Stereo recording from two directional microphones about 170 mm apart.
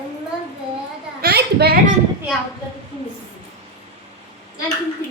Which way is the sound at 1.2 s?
70° right (ahead or behind).